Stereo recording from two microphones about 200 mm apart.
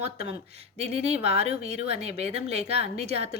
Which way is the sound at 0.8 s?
30° right (ahead or behind).